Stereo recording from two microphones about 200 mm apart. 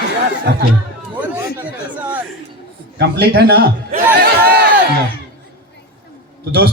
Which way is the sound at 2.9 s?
50° right (ahead or behind).